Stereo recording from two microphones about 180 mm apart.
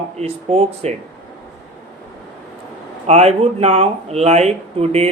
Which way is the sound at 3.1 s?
35° right (ahead or behind).